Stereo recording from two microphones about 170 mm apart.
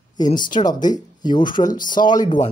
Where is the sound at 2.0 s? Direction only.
25° left (ahead or behind).